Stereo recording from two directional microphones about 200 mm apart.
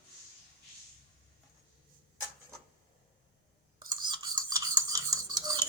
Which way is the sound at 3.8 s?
20° right (ahead or behind).